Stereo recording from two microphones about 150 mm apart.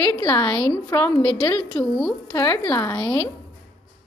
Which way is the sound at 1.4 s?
30° left (ahead or behind).